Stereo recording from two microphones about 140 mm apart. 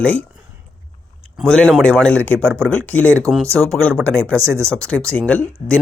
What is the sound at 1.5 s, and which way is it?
Speech, 5° left (ahead or behind).